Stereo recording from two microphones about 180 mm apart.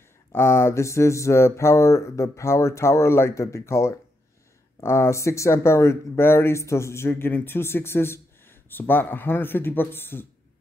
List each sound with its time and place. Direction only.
0.3 s speech: 15° left (ahead or behind)